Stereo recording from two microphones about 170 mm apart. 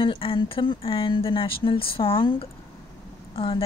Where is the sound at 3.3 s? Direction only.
35° left (ahead or behind).